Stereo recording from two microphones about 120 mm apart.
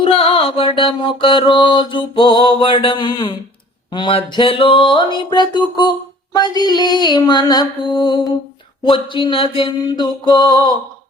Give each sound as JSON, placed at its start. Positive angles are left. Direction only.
{"t": 0.0, "sound": "mantra", "side_deg": 50}
{"t": 9.8, "sound": "mantra", "side_deg": 35}